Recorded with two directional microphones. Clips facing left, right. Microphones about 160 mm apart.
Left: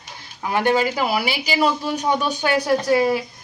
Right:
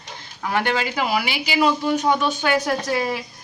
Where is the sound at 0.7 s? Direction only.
40° left (ahead or behind).